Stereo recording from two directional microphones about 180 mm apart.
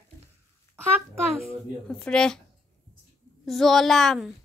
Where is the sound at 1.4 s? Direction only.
5° left (ahead or behind).